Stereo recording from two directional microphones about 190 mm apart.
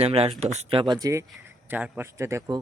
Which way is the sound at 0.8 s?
20° right (ahead or behind).